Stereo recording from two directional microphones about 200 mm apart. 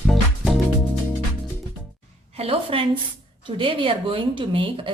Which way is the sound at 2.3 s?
30° right (ahead or behind).